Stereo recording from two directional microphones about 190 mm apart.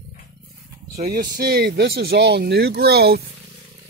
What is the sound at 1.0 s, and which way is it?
Speech, 55° right (ahead or behind).